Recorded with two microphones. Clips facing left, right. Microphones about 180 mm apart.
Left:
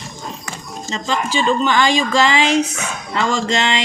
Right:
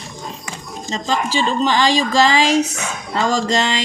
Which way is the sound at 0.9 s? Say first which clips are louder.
Right 1 dB; 35° right (ahead or behind).